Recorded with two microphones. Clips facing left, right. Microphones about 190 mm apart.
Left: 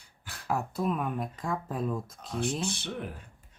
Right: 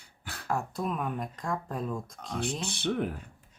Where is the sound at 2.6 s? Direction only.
60° right (ahead or behind).